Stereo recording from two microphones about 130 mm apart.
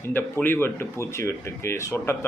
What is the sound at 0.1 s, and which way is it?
Speech, 15° left (ahead or behind).